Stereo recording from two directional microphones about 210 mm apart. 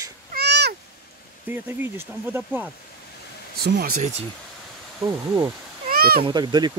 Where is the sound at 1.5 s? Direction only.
10° right (ahead or behind).